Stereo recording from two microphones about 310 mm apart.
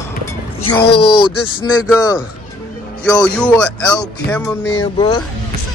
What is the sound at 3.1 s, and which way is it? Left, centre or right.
Speech, centre.